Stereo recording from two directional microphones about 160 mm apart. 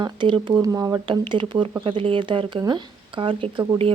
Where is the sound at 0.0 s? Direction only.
30° right (ahead or behind).